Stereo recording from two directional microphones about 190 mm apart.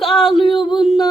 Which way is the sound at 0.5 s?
25° left (ahead or behind).